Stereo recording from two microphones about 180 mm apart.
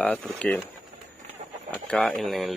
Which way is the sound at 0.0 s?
5° left (ahead or behind).